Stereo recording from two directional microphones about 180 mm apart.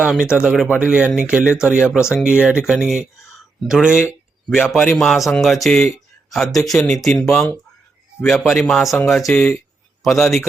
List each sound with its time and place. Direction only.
0.0 s speech: 5° right (ahead or behind)